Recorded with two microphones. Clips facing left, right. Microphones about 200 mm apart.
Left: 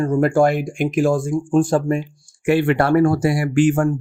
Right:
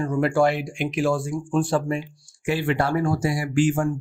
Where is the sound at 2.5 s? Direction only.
60° left (ahead or behind).